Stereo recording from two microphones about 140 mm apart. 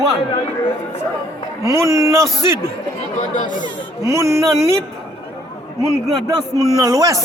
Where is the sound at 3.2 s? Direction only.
65° left (ahead or behind).